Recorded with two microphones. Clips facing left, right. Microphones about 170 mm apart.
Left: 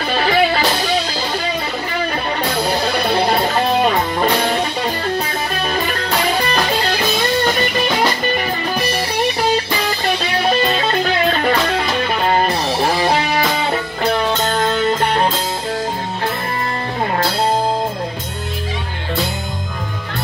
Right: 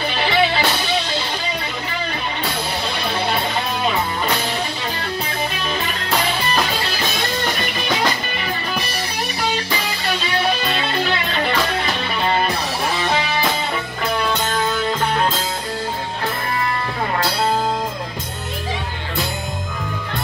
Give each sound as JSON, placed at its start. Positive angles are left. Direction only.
{"t": 0.2, "sound": "music", "side_deg": 45}
{"t": 3.1, "sound": "music", "side_deg": 35}
{"t": 12.3, "sound": "music", "side_deg": 40}